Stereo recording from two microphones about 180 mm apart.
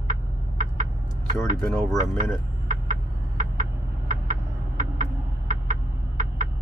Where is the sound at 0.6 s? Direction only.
50° right (ahead or behind).